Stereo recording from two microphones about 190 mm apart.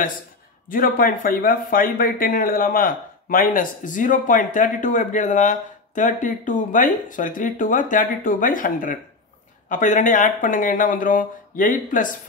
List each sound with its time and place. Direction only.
0.7 s speech: 50° left (ahead or behind)